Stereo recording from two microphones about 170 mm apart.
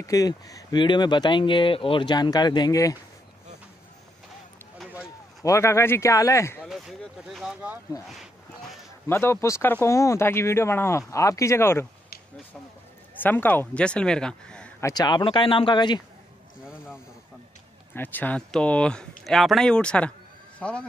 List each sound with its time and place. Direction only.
0.0 s speech: 20° left (ahead or behind)
5.4 s speech: 15° left (ahead or behind)
6.6 s speech: centre (ahead or behind)
9.0 s speech: 15° left (ahead or behind)
13.1 s speech: 10° left (ahead or behind)
14.8 s speech: 20° left (ahead or behind)
16.6 s a sound: 5° right (ahead or behind)
17.9 s a man's voice: 10° left (ahead or behind)